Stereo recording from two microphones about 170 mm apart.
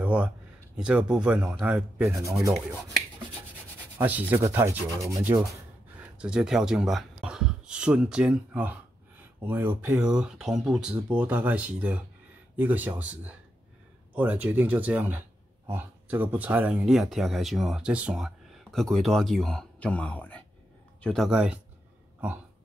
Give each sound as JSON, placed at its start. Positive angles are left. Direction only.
{"t": 0.0, "sound": "a sound", "side_deg": -10}
{"t": 0.7, "sound": "speech", "side_deg": -5}
{"t": 2.0, "sound": "speech", "side_deg": -15}
{"t": 4.0, "sound": "speech", "side_deg": -10}
{"t": 5.9, "sound": "speech", "side_deg": -5}